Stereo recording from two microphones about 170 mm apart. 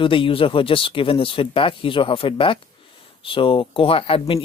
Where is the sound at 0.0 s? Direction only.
30° left (ahead or behind).